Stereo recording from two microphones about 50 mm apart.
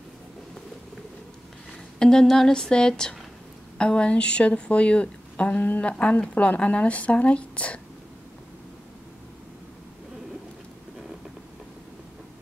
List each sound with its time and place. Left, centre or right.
2.0 s a woman's voice: centre